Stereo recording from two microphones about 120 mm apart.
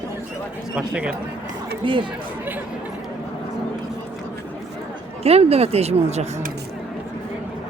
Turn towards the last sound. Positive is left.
turn(degrees=-65)  # may be behind; listen again after turning